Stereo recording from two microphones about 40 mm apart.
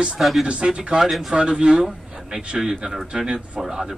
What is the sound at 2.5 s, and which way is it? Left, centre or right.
Speech, centre.